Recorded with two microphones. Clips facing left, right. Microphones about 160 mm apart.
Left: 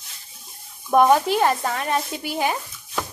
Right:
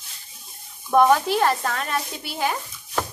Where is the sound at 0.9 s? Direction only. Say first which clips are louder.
Left 1 dB; 20° left (ahead or behind).